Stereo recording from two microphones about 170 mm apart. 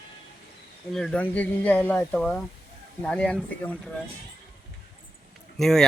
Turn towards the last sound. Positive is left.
turn(degrees=0)  # may be behind; listen again after turning